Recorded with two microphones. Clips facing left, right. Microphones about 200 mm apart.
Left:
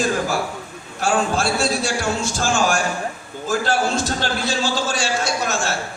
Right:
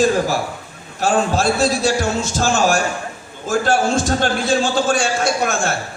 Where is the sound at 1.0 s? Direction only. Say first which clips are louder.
Right 3 dB; 40° right (ahead or behind).